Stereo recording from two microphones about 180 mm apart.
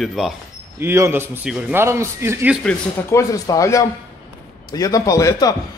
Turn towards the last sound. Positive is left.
turn(degrees=20)  # may be behind; listen again after turning